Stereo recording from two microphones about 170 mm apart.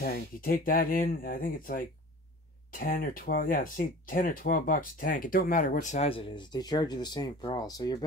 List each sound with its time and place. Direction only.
0.0 s speech: 55° left (ahead or behind); by 8.0 s 20° left (ahead or behind)